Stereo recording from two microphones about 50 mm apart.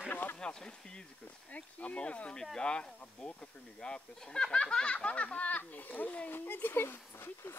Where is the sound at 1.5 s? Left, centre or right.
Left.